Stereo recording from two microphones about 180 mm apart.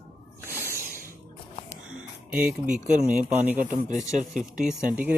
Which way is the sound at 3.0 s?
50° right (ahead or behind).